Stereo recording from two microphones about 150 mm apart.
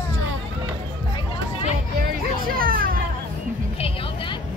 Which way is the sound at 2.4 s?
70° right (ahead or behind).